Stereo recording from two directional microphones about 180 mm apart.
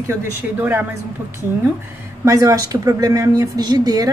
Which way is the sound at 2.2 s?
15° right (ahead or behind).